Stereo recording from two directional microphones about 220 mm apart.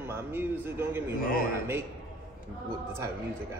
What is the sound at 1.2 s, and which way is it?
Speech, 40° left (ahead or behind).